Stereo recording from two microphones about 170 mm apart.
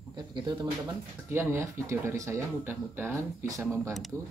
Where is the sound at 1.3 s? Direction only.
15° right (ahead or behind).